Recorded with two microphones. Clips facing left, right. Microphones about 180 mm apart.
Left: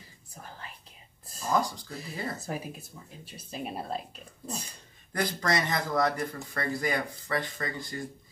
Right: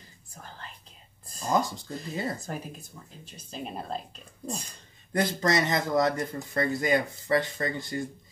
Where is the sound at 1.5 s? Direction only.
25° right (ahead or behind).